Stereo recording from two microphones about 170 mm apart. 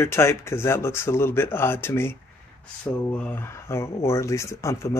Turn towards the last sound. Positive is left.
turn(degrees=15)  # may be behind; listen again after turning